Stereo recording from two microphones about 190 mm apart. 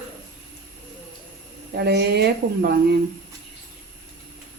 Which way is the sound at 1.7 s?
60° right (ahead or behind).